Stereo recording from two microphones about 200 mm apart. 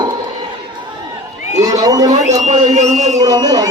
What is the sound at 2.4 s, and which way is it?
Speech, 35° right (ahead or behind).